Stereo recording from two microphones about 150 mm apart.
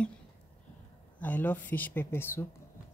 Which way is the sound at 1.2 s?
10° left (ahead or behind).